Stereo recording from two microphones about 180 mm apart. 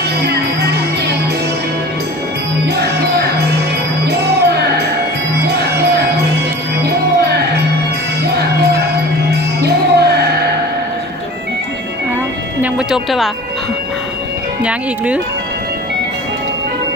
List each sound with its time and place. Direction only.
0.2 s music: 65° right (ahead or behind)
4.0 s music: 65° right (ahead or behind)
6.8 s music: 65° right (ahead or behind)
9.6 s music: 65° right (ahead or behind)
12.6 s music: 5° right (ahead or behind)
14.6 s speech: 5° right (ahead or behind)